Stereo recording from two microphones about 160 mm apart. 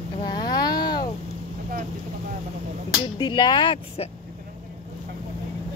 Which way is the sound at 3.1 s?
30° left (ahead or behind).